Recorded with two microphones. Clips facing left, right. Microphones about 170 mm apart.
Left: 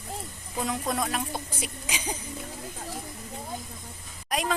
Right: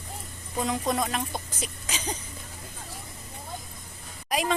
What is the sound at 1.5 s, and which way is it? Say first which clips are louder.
Speech: left 1 dB; 10° left (ahead or behind).